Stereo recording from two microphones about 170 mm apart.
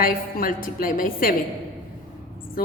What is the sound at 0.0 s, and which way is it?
A woman's voice, 55° left (ahead or behind).